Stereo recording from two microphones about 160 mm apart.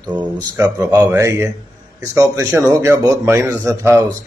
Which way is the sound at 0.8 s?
10° right (ahead or behind).